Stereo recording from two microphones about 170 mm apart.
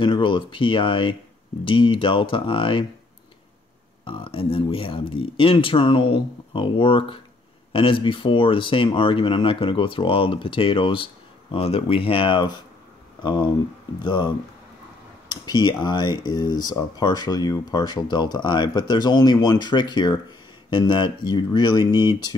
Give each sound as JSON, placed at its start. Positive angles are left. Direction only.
{"t": 0.0, "sound": "speech", "side_deg": 30}
{"t": 4.0, "sound": "speech", "side_deg": 30}